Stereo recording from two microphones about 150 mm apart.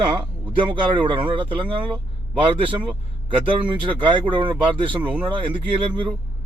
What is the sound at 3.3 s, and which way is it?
Speech, 35° right (ahead or behind).